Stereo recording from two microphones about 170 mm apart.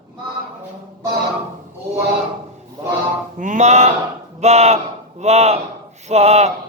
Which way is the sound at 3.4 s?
45° right (ahead or behind).